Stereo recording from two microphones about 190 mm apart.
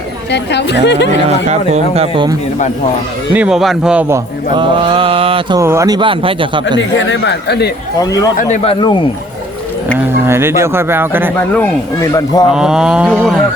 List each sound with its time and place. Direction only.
0.3 s speech: 65° left (ahead or behind)
1.5 s speech: 35° right (ahead or behind)
3.3 s a sound: 5° right (ahead or behind)
4.1 s speech: 25° right (ahead or behind)
5.5 s speech: 15° right (ahead or behind)
6.7 s speech: 75° left (ahead or behind)
8.0 s a man's voice: 20° left (ahead or behind)
8.4 s speech: 40° left (ahead or behind)
10.2 s speech: 15° right (ahead or behind)
11.3 s speech: 10° left (ahead or behind)
12.5 s a sound: 5° right (ahead or behind)